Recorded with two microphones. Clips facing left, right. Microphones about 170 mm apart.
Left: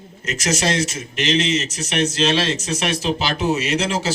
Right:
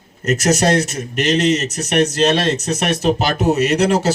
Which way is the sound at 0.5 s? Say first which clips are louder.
Right 5 dB; 60° right (ahead or behind).